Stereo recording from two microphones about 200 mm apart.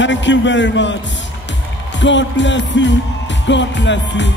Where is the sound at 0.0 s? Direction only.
65° left (ahead or behind).